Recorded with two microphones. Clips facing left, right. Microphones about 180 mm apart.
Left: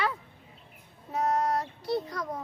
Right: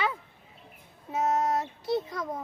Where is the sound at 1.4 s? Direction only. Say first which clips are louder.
Right 1 dB; 25° right (ahead or behind).